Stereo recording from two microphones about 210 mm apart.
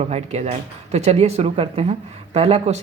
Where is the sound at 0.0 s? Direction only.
30° right (ahead or behind).